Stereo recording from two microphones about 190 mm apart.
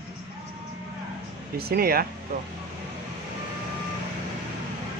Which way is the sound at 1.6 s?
55° right (ahead or behind).